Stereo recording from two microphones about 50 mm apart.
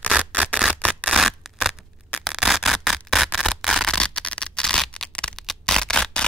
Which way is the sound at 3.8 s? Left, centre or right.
Centre.